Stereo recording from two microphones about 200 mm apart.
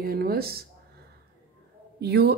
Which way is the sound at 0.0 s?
50° right (ahead or behind).